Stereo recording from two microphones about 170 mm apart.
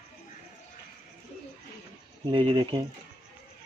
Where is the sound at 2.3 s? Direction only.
30° right (ahead or behind).